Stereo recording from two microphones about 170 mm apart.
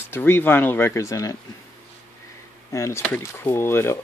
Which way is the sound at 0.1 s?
15° left (ahead or behind).